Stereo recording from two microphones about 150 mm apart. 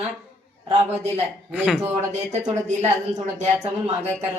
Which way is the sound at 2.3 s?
50° right (ahead or behind).